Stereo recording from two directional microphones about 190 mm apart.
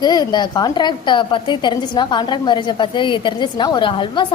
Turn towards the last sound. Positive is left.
turn(degrees=25)  # may be behind; listen again after turning